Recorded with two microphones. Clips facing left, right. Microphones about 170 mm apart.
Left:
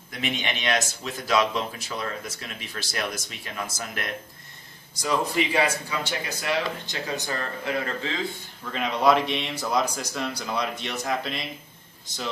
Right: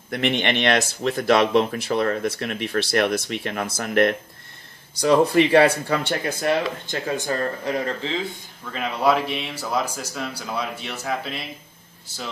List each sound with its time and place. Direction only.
0.1 s speech: 65° right (ahead or behind)
7.3 s speech: 35° right (ahead or behind)
8.7 s speech: 5° right (ahead or behind)